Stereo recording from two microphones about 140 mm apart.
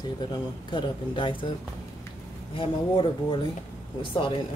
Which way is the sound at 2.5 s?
40° left (ahead or behind).